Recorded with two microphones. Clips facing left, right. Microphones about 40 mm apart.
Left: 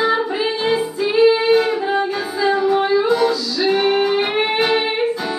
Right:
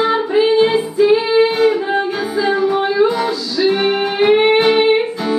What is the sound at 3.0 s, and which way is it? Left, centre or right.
Music, right.